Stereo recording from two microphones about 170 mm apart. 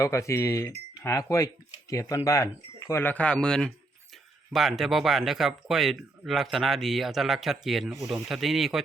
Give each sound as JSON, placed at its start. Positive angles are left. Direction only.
{"t": 0.0, "sound": "speech", "side_deg": 15}